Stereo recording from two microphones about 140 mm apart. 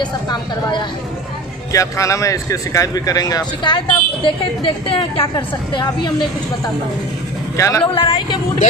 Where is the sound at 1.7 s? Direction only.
20° left (ahead or behind).